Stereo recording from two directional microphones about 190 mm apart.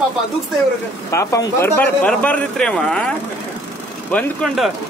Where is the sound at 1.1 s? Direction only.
15° left (ahead or behind).